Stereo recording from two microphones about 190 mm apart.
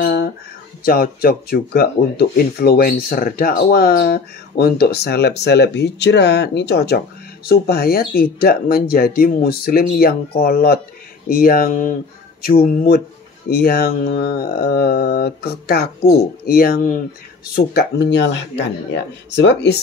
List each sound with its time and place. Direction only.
0.0 s a sound: 65° left (ahead or behind)
0.8 s speech: 50° left (ahead or behind)
17.6 s speech: 60° left (ahead or behind)